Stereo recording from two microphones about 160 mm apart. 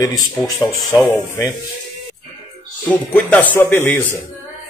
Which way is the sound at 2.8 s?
10° left (ahead or behind).